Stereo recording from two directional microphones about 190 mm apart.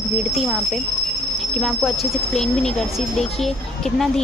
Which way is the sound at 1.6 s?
Centre (ahead or behind).